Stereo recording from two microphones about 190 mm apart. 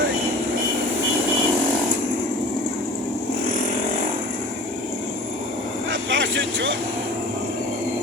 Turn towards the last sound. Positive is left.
turn(degrees=-75)  # may be behind; listen again after turning